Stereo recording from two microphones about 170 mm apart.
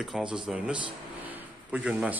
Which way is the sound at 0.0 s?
5° right (ahead or behind).